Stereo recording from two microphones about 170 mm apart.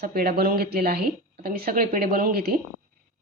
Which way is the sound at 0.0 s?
65° right (ahead or behind).